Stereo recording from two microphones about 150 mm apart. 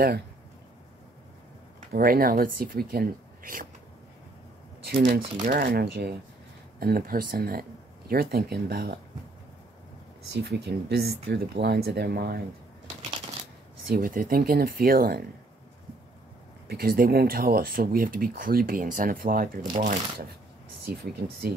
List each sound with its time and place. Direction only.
1.9 s speech: 85° right
4.8 s speech: 85° right
10.3 s speech: 90° right
13.8 s speech: 80° right
16.6 s speech: 85° right
19.7 s speech: 60° right (ahead or behind)
20.8 s speech: 90° right